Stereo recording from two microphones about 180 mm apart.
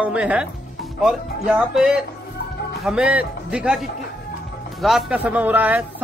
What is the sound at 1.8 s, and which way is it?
A man's voice, 5° right (ahead or behind).